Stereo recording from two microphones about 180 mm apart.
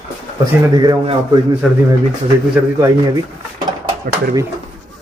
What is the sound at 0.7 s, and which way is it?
Speech, 25° right (ahead or behind).